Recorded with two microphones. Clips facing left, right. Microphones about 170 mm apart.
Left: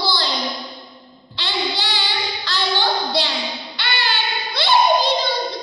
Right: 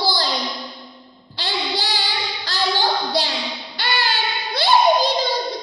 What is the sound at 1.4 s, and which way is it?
Child singing, 40° right (ahead or behind).